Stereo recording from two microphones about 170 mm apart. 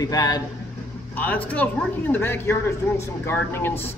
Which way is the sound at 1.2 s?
10° left (ahead or behind).